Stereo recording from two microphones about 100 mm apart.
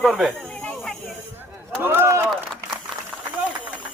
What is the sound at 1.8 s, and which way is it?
Speech, 20° right (ahead or behind).